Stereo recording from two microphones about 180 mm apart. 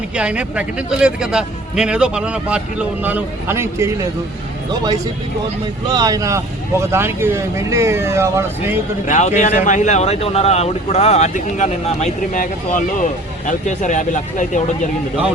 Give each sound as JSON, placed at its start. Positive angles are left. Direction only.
{"t": 0.1, "sound": "speech", "side_deg": -5}
{"t": 9.0, "sound": "speech", "side_deg": 40}